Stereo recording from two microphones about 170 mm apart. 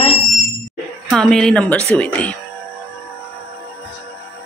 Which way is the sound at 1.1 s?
5° left (ahead or behind).